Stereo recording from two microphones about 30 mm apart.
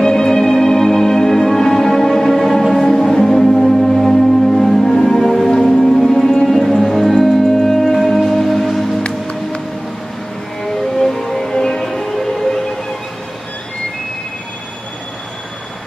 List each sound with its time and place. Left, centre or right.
0.0 s music: left; by 8.8 s centre
11.0 s music: centre